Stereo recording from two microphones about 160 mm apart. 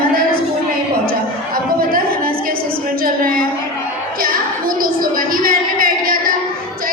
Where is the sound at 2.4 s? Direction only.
65° right (ahead or behind).